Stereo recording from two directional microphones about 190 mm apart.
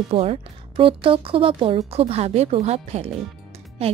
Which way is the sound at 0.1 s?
30° right (ahead or behind).